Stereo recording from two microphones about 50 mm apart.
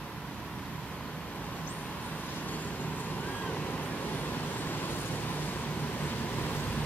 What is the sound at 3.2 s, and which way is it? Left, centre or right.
Vehicle, left.